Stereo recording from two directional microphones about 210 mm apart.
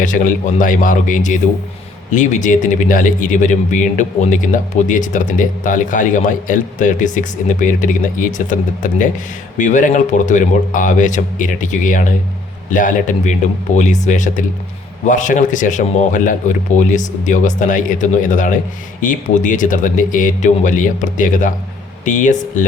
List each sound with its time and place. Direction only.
0.0 s speech: 40° left (ahead or behind)